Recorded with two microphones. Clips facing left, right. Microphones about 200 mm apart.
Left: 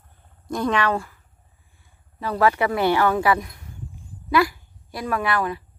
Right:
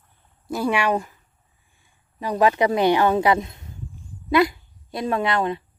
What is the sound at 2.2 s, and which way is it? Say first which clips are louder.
A woman's voice: right 1 dB; 15° right (ahead or behind).